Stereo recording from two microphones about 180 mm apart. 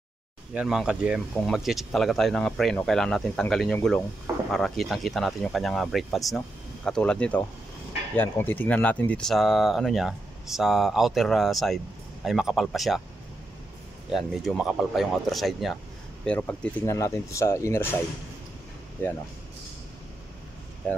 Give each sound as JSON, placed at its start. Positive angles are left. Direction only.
{"t": 0.6, "sound": "speech", "side_deg": -5}
{"t": 14.1, "sound": "speech", "side_deg": 0}
{"t": 16.3, "sound": "speech", "side_deg": 10}